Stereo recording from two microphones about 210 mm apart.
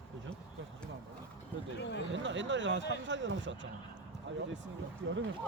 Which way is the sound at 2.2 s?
60° right (ahead or behind).